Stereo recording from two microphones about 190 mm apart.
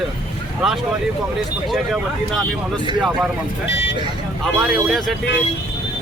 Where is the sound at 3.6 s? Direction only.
70° left (ahead or behind).